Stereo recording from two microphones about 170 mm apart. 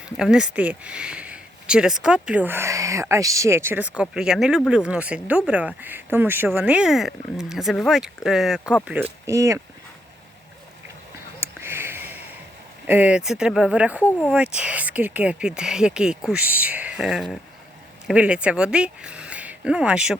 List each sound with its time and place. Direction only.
0.2 s speech: 5° right (ahead or behind)
9.2 s speech: 20° right (ahead or behind)
11.3 s a sound: 15° right (ahead or behind)
12.9 s speech: 10° right (ahead or behind)